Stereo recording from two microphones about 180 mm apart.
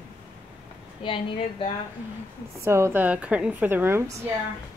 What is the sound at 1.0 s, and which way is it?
Speech, 30° left (ahead or behind).